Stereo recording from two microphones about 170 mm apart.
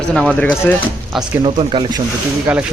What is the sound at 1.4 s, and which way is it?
Speech, 30° right (ahead or behind).